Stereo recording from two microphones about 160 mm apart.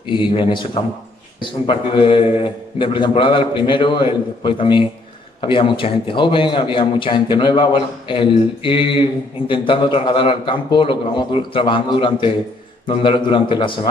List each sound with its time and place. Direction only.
0.1 s a man's voice: 30° left (ahead or behind)